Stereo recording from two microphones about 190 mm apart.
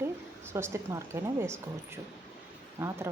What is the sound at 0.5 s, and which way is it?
Speech, 15° right (ahead or behind).